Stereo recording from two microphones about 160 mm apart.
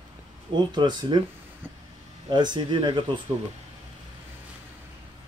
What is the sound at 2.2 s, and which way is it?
Speech, 30° right (ahead or behind).